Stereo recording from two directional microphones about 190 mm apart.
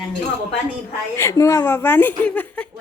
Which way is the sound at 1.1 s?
15° left (ahead or behind).